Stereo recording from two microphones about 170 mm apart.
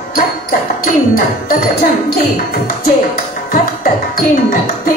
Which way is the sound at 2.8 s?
55° left (ahead or behind).